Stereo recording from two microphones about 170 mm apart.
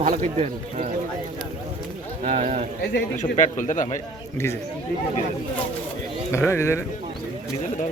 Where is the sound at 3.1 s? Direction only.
45° left (ahead or behind).